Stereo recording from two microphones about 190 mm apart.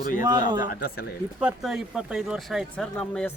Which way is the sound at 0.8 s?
50° left (ahead or behind).